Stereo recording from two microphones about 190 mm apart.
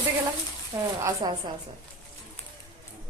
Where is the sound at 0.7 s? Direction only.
25° right (ahead or behind).